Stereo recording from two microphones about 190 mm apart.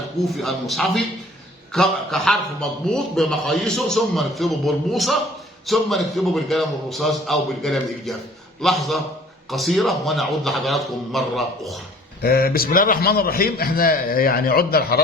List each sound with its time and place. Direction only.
0.2 s a man's voice: centre (ahead or behind)
12.2 s a man's voice: 50° left (ahead or behind)